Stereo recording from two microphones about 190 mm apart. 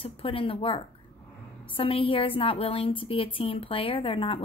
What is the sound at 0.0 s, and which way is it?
A woman's voice, 30° left (ahead or behind).